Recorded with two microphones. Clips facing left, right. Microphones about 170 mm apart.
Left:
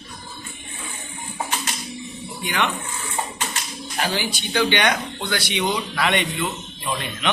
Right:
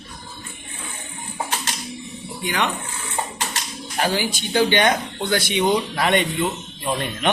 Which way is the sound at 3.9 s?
40° right (ahead or behind).